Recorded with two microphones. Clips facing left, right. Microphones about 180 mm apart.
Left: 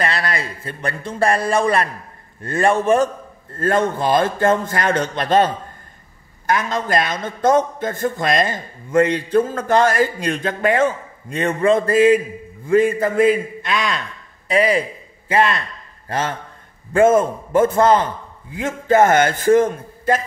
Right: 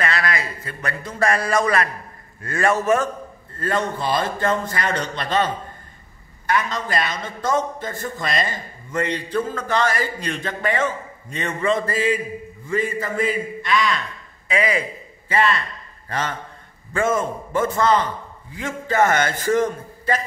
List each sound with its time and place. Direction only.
0.0 s a man's voice: 30° left (ahead or behind)
3.5 s a man's voice: 50° left (ahead or behind)
16.1 s a man's voice: 45° left (ahead or behind)